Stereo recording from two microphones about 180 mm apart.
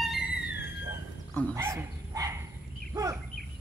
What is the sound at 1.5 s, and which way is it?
Dog, 15° right (ahead or behind).